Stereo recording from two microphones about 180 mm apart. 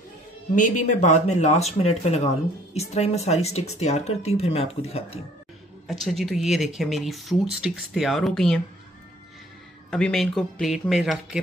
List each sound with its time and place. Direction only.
0.6 s speech: 45° left (ahead or behind)
5.9 s speech: centre (ahead or behind)
9.8 s speech: 5° left (ahead or behind)